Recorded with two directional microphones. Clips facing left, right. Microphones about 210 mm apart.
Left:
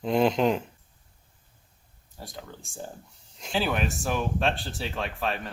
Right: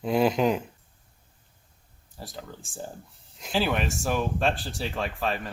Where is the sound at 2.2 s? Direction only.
Centre (ahead or behind).